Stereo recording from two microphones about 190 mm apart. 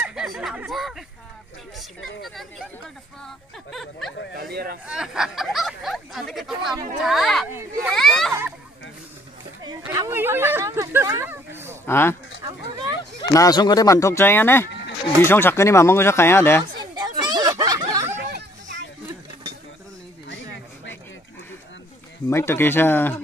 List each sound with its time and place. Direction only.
0.0 s a sound: 5° right (ahead or behind)
1.8 s speech: centre (ahead or behind)
3.7 s speech: centre (ahead or behind)
4.4 s speech: 55° right (ahead or behind)
4.8 s speech: 5° right (ahead or behind)
8.3 s speech: 15° right (ahead or behind)
9.8 s speech: 15° right (ahead or behind)
11.8 s speech: 10° left (ahead or behind)
12.4 s speech: 20° right (ahead or behind)
13.2 s speech: 20° left (ahead or behind)
16.9 s chatter: 25° right (ahead or behind)
22.3 s speech: 15° left (ahead or behind)